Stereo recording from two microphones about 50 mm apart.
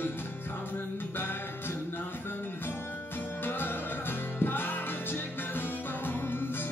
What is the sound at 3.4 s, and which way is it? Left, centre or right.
Music, left.